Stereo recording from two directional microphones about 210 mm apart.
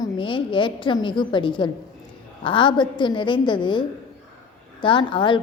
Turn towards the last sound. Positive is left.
turn(degrees=25)  # may be behind; listen again after turning